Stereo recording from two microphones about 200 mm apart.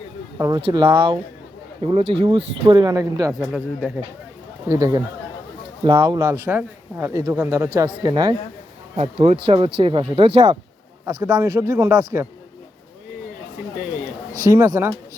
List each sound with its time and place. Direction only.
0.3 s speech: 15° right (ahead or behind)
3.4 s speech: 5° right (ahead or behind)
4.7 s speech: 15° right (ahead or behind)
14.4 s speech: 15° right (ahead or behind)